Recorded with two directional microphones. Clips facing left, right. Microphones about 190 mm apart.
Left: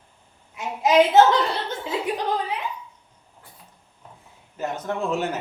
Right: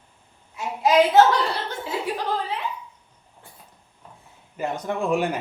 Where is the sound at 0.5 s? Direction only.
20° left (ahead or behind).